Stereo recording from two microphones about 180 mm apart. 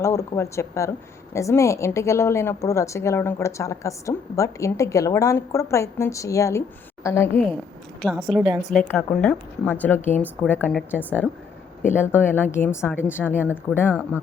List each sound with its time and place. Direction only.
0.0 s a woman's voice: 15° left (ahead or behind)
8.0 s a woman's voice: centre (ahead or behind)
8.4 s a woman's voice: 10° right (ahead or behind)
8.7 s a woman's voice: 10° left (ahead or behind)